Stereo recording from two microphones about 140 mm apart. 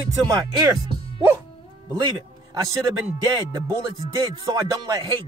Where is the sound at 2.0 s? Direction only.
30° right (ahead or behind).